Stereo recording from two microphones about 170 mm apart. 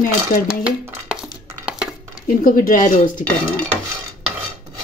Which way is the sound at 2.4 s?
55° left (ahead or behind).